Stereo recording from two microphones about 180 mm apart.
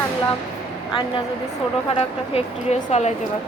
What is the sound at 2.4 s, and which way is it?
Speech, 40° left (ahead or behind).